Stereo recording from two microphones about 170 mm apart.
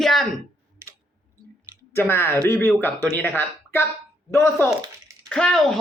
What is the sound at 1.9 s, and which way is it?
Speech, 15° left (ahead or behind).